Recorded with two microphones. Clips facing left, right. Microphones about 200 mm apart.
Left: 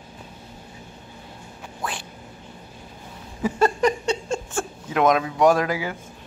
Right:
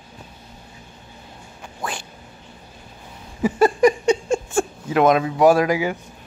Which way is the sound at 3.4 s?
10° right (ahead or behind).